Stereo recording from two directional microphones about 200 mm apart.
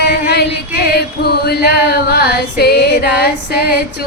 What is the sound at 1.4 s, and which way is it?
Female singing, 55° left (ahead or behind).